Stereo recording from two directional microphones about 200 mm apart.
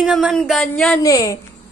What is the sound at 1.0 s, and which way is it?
Speech, 15° left (ahead or behind).